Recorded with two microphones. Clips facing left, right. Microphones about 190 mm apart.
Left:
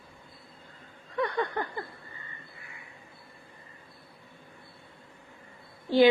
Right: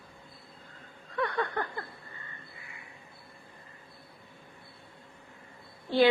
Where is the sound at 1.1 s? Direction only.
15° left (ahead or behind).